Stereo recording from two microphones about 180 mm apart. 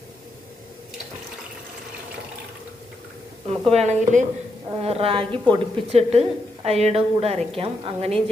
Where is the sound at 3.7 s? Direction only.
40° right (ahead or behind).